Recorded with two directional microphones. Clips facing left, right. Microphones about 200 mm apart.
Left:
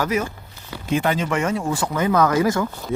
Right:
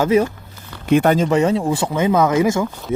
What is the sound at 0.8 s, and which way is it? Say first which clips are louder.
Speech: right 7 dB; 55° right (ahead or behind).